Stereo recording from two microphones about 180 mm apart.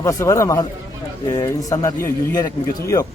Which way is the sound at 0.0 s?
15° left (ahead or behind).